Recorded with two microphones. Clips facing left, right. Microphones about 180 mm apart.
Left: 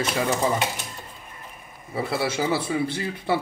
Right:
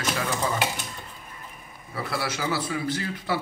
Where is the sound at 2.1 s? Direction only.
25° left (ahead or behind).